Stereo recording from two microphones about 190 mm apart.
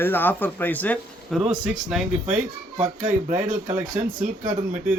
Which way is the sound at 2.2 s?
40° right (ahead or behind).